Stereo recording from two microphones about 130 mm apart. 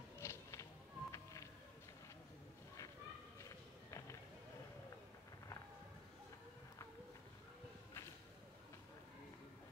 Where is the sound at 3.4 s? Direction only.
25° left (ahead or behind).